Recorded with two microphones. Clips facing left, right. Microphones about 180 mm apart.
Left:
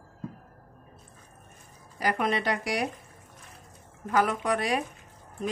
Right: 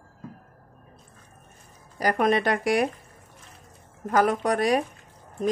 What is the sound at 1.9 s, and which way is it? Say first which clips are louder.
Speech: right 5 dB; 45° right (ahead or behind).